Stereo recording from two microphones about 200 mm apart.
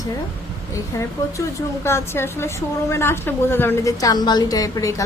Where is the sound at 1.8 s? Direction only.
10° left (ahead or behind).